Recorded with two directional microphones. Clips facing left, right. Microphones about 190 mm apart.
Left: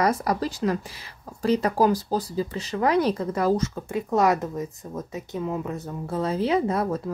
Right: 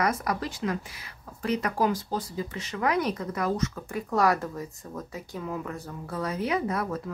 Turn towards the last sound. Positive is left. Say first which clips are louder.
# left 5 dB
turn(degrees=30)  # may be behind; listen again after turning